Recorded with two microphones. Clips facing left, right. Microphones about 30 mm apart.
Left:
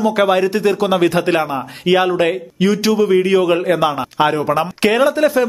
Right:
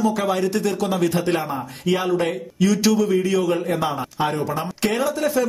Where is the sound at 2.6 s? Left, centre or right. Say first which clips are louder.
Left 4 dB; left.